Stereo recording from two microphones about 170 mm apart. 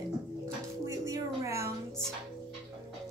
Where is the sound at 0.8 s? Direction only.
20° right (ahead or behind).